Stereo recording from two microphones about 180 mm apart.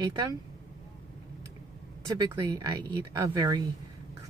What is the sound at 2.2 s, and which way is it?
A woman's voice, 20° right (ahead or behind).